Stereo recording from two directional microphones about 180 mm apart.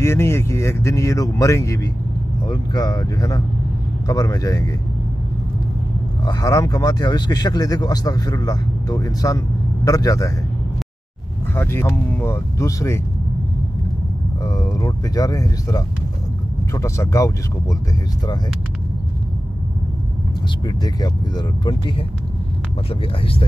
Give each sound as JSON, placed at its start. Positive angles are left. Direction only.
{"t": 0.0, "sound": "speech", "side_deg": 15}
{"t": 6.2, "sound": "speech", "side_deg": 20}
{"t": 11.5, "sound": "speech", "side_deg": 15}
{"t": 14.4, "sound": "speech", "side_deg": 15}
{"t": 20.6, "sound": "speech", "side_deg": 20}